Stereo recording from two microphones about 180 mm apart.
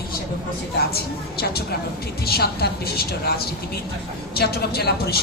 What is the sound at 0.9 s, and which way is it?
A woman's voice, 60° left (ahead or behind).